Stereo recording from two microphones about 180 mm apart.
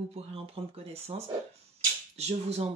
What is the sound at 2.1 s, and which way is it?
Speech, 35° right (ahead or behind).